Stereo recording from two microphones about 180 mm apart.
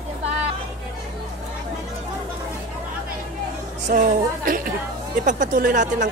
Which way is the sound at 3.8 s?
45° right (ahead or behind).